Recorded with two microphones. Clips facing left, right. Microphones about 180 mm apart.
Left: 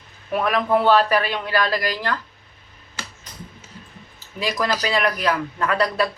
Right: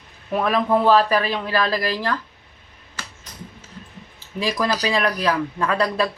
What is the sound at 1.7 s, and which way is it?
Speech, 30° right (ahead or behind).